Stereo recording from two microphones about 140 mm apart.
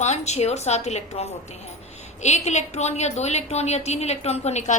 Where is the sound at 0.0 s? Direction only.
55° left (ahead or behind).